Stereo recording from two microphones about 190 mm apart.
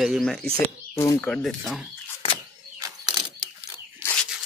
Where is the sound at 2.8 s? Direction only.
20° right (ahead or behind).